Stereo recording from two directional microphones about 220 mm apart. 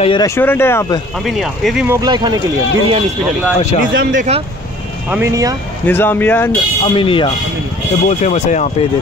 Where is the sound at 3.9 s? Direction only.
60° right (ahead or behind).